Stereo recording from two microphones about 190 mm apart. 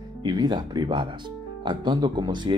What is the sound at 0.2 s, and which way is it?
Speech, 20° right (ahead or behind).